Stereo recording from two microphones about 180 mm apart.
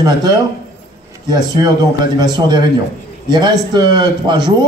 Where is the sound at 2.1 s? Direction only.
25° right (ahead or behind).